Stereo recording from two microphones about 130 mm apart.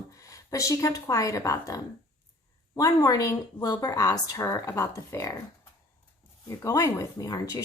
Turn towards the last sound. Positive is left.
turn(degrees=30)  # may be behind; listen again after turning